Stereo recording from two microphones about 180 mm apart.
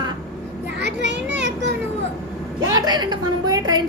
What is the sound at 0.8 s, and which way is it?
Children playing, 75° right (ahead or behind).